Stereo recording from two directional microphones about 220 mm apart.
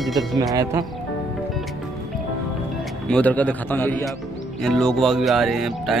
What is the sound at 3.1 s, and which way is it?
A man's voice, 5° left (ahead or behind).